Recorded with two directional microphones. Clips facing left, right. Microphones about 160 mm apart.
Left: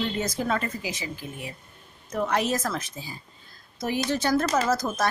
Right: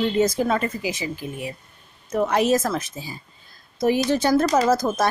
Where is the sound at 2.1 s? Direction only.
10° right (ahead or behind).